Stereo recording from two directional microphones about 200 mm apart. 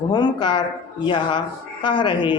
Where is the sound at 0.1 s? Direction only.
20° left (ahead or behind).